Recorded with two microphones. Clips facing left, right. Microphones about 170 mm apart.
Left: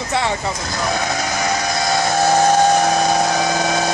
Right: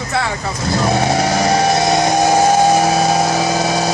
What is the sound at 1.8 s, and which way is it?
Vehicle, 15° right (ahead or behind).